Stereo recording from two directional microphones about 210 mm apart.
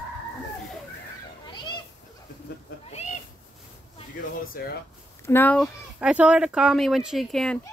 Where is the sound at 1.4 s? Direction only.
20° left (ahead or behind).